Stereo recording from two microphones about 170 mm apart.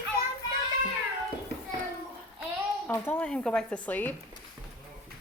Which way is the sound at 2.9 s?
15° left (ahead or behind).